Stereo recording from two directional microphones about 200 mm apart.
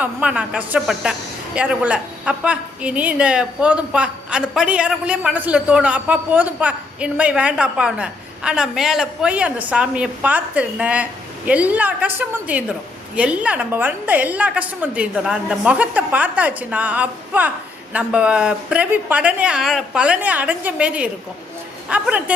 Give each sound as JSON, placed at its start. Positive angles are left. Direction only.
{"t": 0.0, "sound": "a woman's voice", "side_deg": -5}